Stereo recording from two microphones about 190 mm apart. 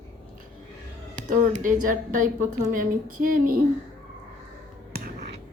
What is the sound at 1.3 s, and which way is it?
A woman's voice, 45° right (ahead or behind).